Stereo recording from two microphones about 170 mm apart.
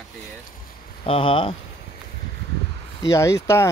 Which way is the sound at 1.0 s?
30° left (ahead or behind).